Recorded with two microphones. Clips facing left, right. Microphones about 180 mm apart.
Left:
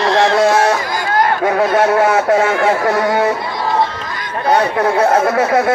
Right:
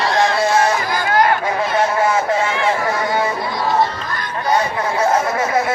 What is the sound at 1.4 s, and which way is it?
Speech, 65° left (ahead or behind).